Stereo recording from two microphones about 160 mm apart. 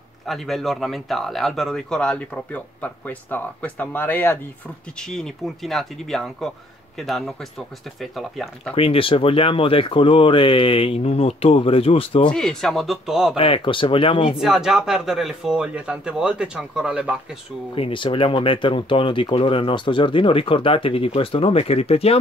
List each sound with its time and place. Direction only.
0.3 s speech: centre (ahead or behind)
8.7 s speech: 35° left (ahead or behind)
12.3 s speech: 5° left (ahead or behind)
13.4 s speech: 35° left (ahead or behind)
14.4 s speech: centre (ahead or behind)
17.7 s speech: 35° left (ahead or behind)